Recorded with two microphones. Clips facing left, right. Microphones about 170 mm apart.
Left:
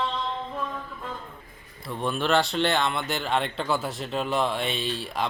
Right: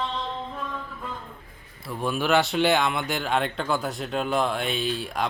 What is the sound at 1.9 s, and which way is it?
Speech, 5° right (ahead or behind).